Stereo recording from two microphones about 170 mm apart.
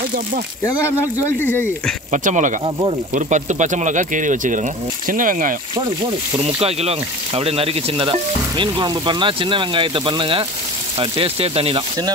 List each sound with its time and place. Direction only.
1.4 s speech: 10° left (ahead or behind)
2.1 s speech: 50° right (ahead or behind)
6.3 s speech: 35° right (ahead or behind)